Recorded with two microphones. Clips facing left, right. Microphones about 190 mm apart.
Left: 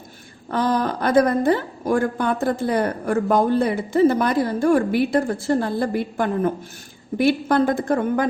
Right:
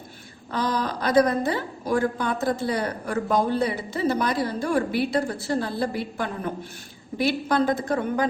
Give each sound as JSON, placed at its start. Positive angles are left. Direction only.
{"t": 0.5, "sound": "a woman's voice", "side_deg": 50}